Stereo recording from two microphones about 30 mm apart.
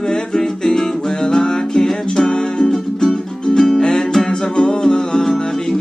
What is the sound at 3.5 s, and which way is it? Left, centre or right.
Music, left.